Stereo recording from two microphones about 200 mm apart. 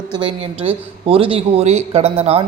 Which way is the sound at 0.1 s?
25° right (ahead or behind).